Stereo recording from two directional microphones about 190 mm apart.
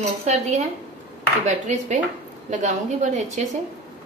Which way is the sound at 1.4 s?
40° right (ahead or behind).